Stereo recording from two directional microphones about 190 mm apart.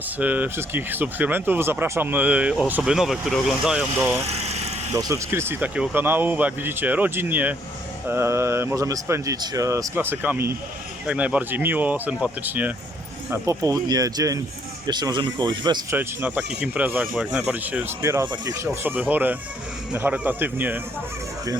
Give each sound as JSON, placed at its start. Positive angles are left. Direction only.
{"t": 0.2, "sound": "speech", "side_deg": -10}
{"t": 4.3, "sound": "vehicle", "side_deg": -35}
{"t": 4.9, "sound": "speech", "side_deg": -15}
{"t": 16.0, "sound": "speech", "side_deg": -10}